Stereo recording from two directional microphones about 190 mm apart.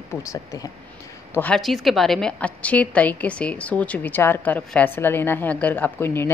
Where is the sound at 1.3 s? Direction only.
5° left (ahead or behind).